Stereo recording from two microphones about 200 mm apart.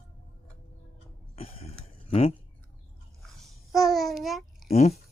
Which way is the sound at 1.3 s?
30° left (ahead or behind).